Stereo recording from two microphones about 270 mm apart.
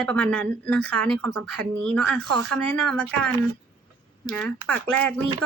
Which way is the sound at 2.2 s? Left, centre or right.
Right.